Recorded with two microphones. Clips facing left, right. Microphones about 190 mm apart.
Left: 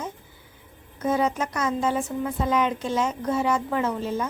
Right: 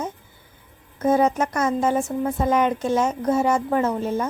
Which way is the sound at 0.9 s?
50° right (ahead or behind).